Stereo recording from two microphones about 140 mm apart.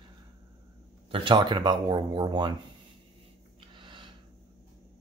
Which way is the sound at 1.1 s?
35° right (ahead or behind).